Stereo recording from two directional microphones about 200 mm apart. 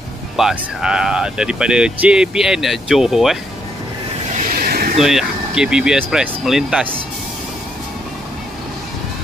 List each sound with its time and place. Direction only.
0.4 s speech: centre (ahead or behind)
4.4 s a sound: 45° right (ahead or behind)
5.0 s speech: 5° right (ahead or behind)